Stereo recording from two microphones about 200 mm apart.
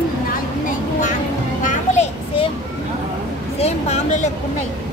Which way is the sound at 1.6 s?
35° left (ahead or behind).